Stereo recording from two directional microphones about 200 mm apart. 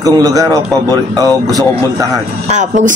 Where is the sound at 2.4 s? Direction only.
35° right (ahead or behind).